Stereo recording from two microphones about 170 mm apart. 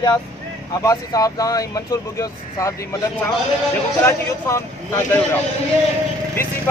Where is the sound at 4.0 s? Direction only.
15° left (ahead or behind).